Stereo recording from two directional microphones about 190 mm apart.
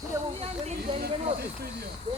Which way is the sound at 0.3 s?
30° right (ahead or behind).